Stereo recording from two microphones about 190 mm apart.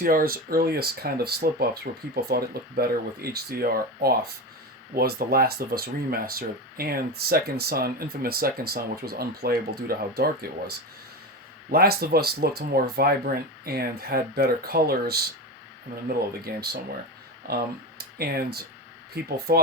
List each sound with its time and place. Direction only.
0.0 s speech: 50° right (ahead or behind)
11.7 s speech: 55° right (ahead or behind)